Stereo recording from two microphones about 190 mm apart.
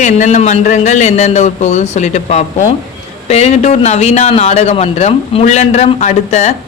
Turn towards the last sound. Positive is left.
turn(degrees=35)  # may be behind; listen again after turning